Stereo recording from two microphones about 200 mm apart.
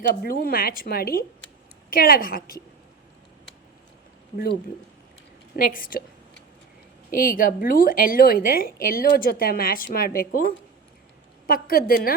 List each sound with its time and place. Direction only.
0.0 s a woman's voice: 50° left (ahead or behind)
5.5 s a woman's voice: 45° left (ahead or behind)
7.1 s a woman's voice: 45° left (ahead or behind)